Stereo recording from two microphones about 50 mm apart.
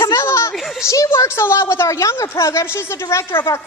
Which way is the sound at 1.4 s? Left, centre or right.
Left.